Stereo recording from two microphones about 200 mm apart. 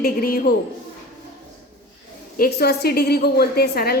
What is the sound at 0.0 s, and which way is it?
Speech, 50° left (ahead or behind).